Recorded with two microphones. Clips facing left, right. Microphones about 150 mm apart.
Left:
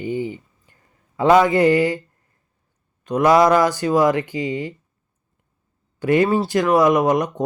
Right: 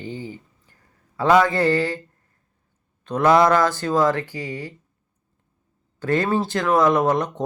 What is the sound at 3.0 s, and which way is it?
Speech, 10° left (ahead or behind).